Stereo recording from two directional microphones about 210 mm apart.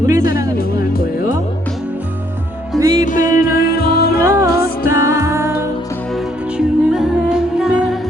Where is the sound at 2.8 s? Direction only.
15° right (ahead or behind).